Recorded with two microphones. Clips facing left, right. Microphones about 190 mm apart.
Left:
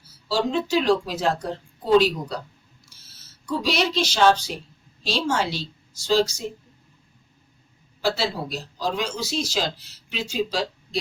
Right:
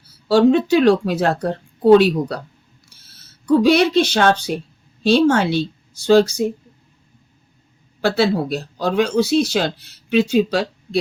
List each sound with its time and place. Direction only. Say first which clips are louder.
0.0 s speech: right 11 dB; 60° right (ahead or behind)
8.0 s speech: right 8 dB; 60° right (ahead or behind)